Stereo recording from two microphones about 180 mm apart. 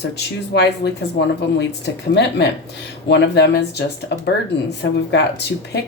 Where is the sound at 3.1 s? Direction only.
70° left (ahead or behind).